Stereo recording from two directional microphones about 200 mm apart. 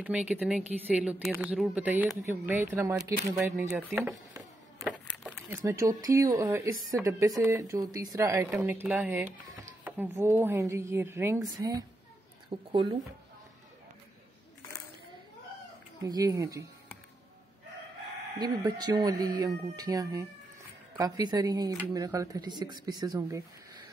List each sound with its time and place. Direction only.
0.0 s a woman's voice: 5° right (ahead or behind)
4.7 s keys jangling: centre (ahead or behind)
5.6 s a woman's voice: 15° right (ahead or behind)
16.0 s a woman's voice: 20° right (ahead or behind)
18.4 s speech: 20° right (ahead or behind)